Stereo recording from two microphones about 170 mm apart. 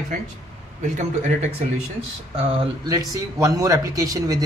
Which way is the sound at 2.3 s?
30° right (ahead or behind).